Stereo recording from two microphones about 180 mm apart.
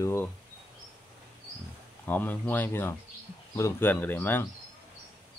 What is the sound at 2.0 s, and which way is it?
Speech, 10° left (ahead or behind).